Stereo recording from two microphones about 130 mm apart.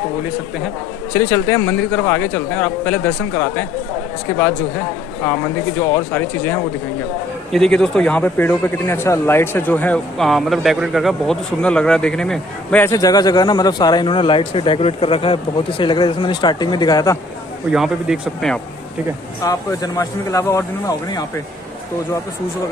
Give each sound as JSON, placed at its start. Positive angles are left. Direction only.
{"t": 1.1, "sound": "a man's voice", "side_deg": 20}
{"t": 4.3, "sound": "speech", "side_deg": 20}
{"t": 7.5, "sound": "a man's voice", "side_deg": 5}
{"t": 12.8, "sound": "speech", "side_deg": 25}
{"t": 17.6, "sound": "speech", "side_deg": -5}
{"t": 19.4, "sound": "speech", "side_deg": 25}